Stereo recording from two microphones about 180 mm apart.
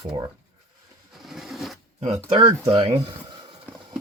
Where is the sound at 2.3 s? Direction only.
20° right (ahead or behind).